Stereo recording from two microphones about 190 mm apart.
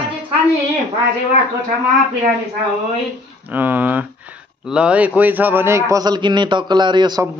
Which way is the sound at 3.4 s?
10° right (ahead or behind).